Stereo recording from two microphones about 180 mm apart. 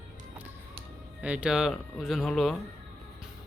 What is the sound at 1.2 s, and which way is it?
A man's voice, 5° right (ahead or behind).